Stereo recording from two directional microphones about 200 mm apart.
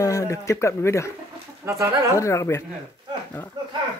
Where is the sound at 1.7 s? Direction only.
15° right (ahead or behind).